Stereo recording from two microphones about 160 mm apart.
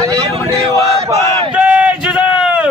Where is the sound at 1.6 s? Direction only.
10° right (ahead or behind).